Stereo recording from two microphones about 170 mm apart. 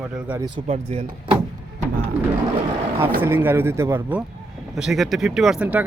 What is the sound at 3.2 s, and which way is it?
Speech, 15° right (ahead or behind).